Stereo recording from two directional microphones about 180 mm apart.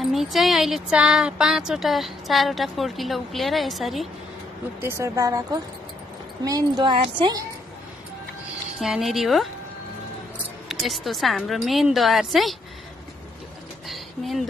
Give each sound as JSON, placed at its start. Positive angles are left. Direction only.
{"t": 0.0, "sound": "speech", "side_deg": 0}
{"t": 4.7, "sound": "a woman's voice", "side_deg": -15}
{"t": 8.7, "sound": "speech", "side_deg": 0}
{"t": 10.7, "sound": "speech", "side_deg": 0}
{"t": 13.8, "sound": "a sound", "side_deg": 0}